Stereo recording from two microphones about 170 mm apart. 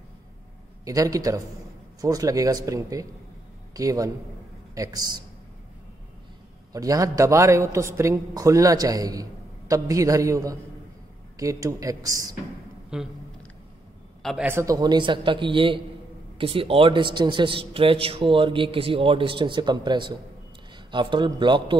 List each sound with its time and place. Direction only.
0.8 s a man's voice: 20° right (ahead or behind)
6.7 s a man's voice: 20° right (ahead or behind)
12.9 s a man's voice: 5° right (ahead or behind)
14.2 s a man's voice: centre (ahead or behind)
14.5 s a man's voice: 20° right (ahead or behind)